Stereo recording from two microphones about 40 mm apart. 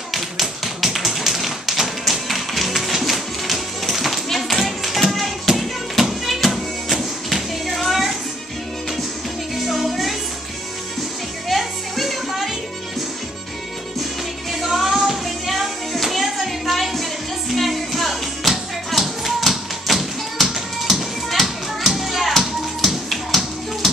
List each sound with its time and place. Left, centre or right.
0.1 s tap: centre
5.5 s music: centre
9.6 s music: centre
11.4 s music: centre
14.5 s music: centre
18.9 s tap: centre
23.0 s music: centre